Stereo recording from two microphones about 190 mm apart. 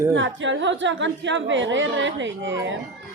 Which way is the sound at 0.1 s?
80° right.